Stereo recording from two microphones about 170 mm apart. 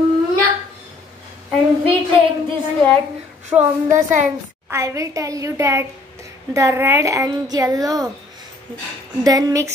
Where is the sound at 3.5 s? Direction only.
45° right (ahead or behind).